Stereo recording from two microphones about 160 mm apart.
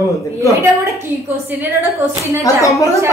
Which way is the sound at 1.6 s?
15° right (ahead or behind).